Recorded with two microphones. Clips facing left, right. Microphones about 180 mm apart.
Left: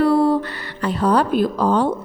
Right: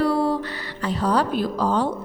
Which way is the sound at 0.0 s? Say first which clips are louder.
Left 5 dB; 55° left (ahead or behind).